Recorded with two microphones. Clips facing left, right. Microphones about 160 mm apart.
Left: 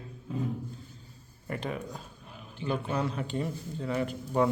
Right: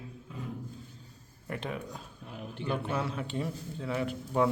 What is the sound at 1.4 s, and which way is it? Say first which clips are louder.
Speech: left 2 dB; centre (ahead or behind).